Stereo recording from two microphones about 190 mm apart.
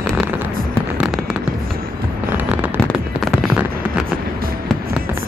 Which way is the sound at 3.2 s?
5° right (ahead or behind).